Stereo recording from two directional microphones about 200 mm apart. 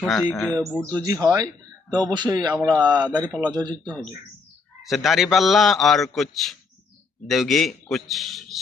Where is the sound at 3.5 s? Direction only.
20° right (ahead or behind).